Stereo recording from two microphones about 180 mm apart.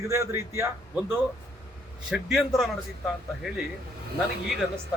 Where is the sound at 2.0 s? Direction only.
Centre (ahead or behind).